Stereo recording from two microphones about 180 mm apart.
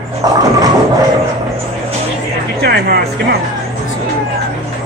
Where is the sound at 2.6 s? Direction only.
60° right (ahead or behind).